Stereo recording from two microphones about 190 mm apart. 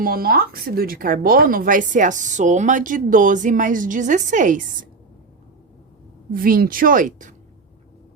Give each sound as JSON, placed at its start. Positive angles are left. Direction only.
{"t": 0.0, "sound": "speech", "side_deg": -50}
{"t": 6.3, "sound": "speech", "side_deg": -50}